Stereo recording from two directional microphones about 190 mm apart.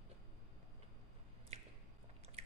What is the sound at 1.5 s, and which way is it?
Squish, 35° right (ahead or behind).